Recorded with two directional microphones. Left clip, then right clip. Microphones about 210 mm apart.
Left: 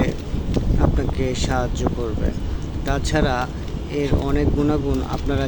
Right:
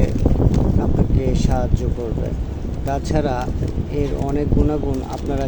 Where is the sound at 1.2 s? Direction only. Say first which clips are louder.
Left 2 dB; 5° right (ahead or behind).